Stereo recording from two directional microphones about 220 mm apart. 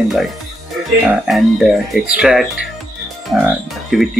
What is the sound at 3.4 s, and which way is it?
Speech, centre (ahead or behind).